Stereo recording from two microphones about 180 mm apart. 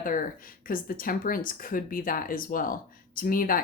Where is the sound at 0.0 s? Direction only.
50° left (ahead or behind).